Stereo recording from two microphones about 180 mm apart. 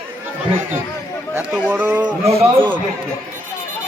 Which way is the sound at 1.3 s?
10° right (ahead or behind).